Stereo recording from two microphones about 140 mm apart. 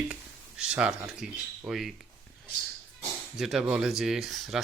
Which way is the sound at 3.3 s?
5° right (ahead or behind).